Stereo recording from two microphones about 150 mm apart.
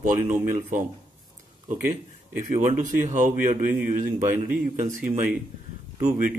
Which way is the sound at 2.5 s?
60° right (ahead or behind).